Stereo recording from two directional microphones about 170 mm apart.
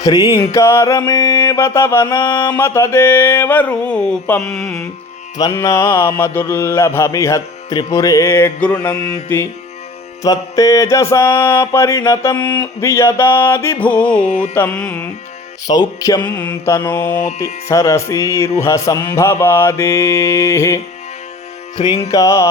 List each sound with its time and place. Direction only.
0.0 s music: 20° left (ahead or behind)
0.5 s mantra: 15° left (ahead or behind)
4.5 s carnatic music: centre (ahead or behind)
5.4 s mantra: 20° left (ahead or behind)
15.6 s music: 20° left (ahead or behind)
16.2 s mantra: 10° left (ahead or behind)
21.8 s music: 25° left (ahead or behind)
22.1 s mantra: 20° left (ahead or behind)